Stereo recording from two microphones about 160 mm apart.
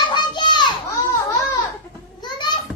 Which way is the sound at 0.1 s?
30° left (ahead or behind).